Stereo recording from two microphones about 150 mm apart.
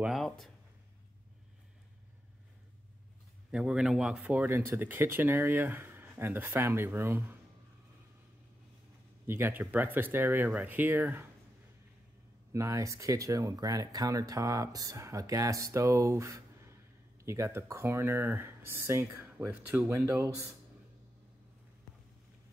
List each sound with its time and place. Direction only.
0.0 s speech: centre (ahead or behind)
3.5 s speech: 5° right (ahead or behind)
9.2 s speech: 15° right (ahead or behind)
12.5 s speech: 20° right (ahead or behind)